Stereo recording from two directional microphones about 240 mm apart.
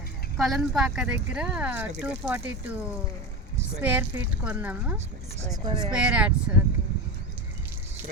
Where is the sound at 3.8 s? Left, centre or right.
Centre.